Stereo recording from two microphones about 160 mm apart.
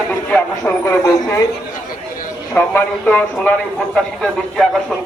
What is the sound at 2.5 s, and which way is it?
A man's voice, 10° left (ahead or behind).